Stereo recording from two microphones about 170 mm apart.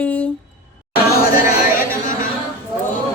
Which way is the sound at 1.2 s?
60° left (ahead or behind).